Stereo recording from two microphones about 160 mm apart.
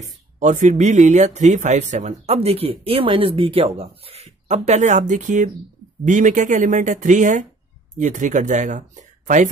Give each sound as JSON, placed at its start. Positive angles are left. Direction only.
{"t": 0.0, "sound": "speech", "side_deg": -45}